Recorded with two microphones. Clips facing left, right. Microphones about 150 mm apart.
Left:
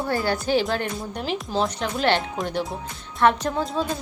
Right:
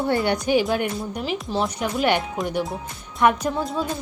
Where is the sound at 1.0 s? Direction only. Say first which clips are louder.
Right 1 dB; 5° right (ahead or behind).